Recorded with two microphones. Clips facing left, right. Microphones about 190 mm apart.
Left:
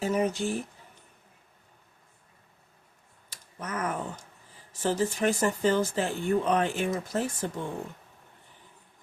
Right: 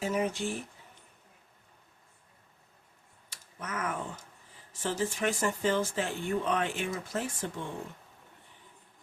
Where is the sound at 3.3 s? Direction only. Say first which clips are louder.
Left 3 dB; 35° left (ahead or behind).